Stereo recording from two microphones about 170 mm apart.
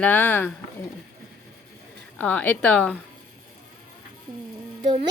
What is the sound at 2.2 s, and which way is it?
Speech, 10° left (ahead or behind).